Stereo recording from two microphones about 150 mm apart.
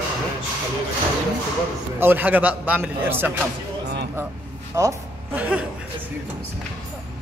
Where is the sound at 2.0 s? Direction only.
15° right (ahead or behind).